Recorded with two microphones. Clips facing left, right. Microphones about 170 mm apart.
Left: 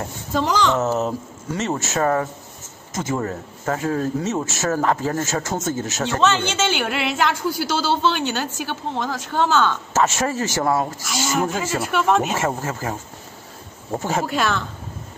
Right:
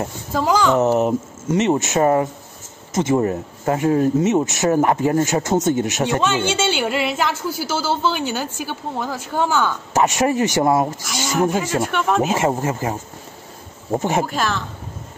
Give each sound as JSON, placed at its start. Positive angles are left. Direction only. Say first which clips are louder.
{"t": 0.4, "sound": "speech", "louder": "right 3 dB", "side_deg": -10}
{"t": 11.1, "sound": "speech", "louder": "right 3 dB", "side_deg": 0}
{"t": 12.4, "sound": "speech", "louder": "right 4 dB", "side_deg": -20}
{"t": 13.9, "sound": "speech", "louder": "right 4 dB", "side_deg": -20}
{"t": 14.3, "sound": "speech", "louder": "left 1 dB", "side_deg": 0}